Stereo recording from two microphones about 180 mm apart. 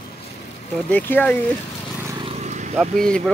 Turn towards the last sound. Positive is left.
turn(degrees=0)  # may be behind; listen again after turning